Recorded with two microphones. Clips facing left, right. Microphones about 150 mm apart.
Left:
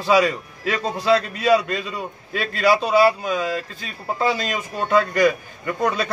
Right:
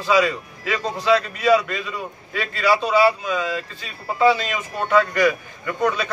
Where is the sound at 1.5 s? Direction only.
35° left (ahead or behind).